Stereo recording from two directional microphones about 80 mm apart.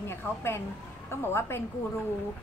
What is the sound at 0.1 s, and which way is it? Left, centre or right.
A woman's voice, left.